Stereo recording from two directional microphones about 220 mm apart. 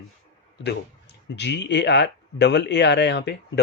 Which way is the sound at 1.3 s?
50° left (ahead or behind).